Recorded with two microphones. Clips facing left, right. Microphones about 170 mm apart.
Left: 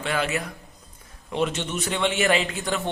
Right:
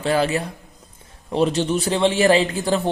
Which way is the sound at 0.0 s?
35° right (ahead or behind).